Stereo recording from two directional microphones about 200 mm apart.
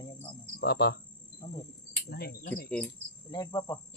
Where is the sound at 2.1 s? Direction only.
50° left (ahead or behind).